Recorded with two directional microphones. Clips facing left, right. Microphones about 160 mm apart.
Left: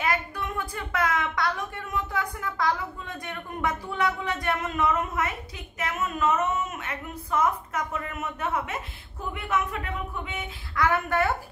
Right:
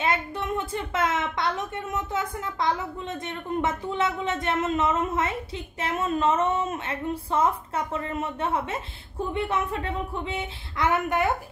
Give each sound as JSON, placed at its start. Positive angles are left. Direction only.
{"t": 0.0, "sound": "a child's voice", "side_deg": -25}